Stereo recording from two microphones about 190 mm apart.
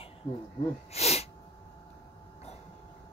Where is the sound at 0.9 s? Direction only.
35° left (ahead or behind).